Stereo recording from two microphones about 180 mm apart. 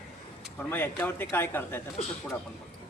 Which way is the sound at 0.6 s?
10° left (ahead or behind).